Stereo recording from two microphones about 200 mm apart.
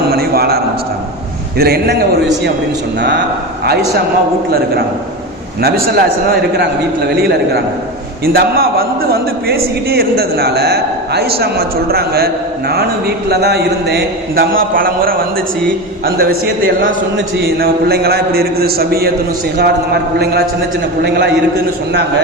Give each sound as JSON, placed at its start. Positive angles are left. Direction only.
{"t": 0.1, "sound": "a sound", "side_deg": -50}
{"t": 1.5, "sound": "a man's voice", "side_deg": -50}
{"t": 5.6, "sound": "a man's voice", "side_deg": -50}